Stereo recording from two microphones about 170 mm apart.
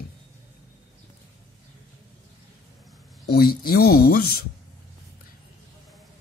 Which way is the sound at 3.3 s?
60° left (ahead or behind).